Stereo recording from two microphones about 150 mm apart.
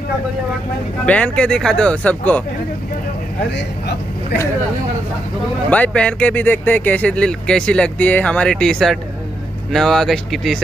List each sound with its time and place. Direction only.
1.0 s speech: 10° left (ahead or behind)
3.8 s speech: 90° left
5.7 s speech: 10° left (ahead or behind)